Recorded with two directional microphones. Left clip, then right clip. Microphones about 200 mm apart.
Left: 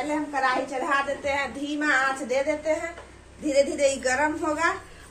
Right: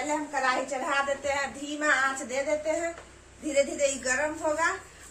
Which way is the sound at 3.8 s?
40° left (ahead or behind).